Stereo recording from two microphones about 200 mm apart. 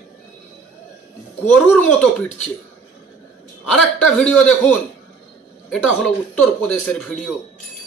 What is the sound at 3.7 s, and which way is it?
A man's voice, 5° left (ahead or behind).